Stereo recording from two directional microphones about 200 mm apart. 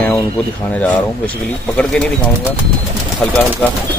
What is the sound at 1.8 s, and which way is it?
Speech, 5° left (ahead or behind).